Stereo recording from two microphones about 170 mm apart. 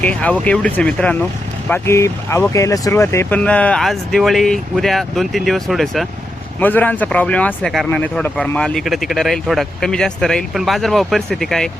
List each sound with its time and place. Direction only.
0.0 s speech: 10° left (ahead or behind)